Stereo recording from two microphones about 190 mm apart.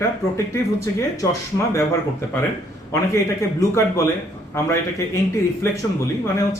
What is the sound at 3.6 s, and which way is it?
Speech, 15° left (ahead or behind).